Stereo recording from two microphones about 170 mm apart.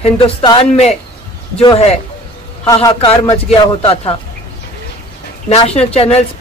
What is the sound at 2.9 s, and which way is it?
A man's voice, 35° left (ahead or behind).